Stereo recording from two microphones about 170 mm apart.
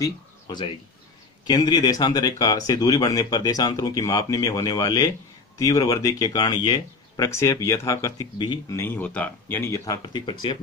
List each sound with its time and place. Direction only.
0.0 s speech: 25° left (ahead or behind)